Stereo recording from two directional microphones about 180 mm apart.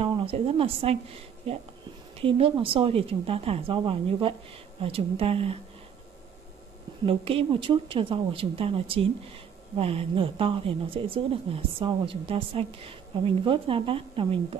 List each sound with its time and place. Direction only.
0.0 s a woman's voice: 30° right (ahead or behind)
7.1 s a woman's voice: 30° right (ahead or behind)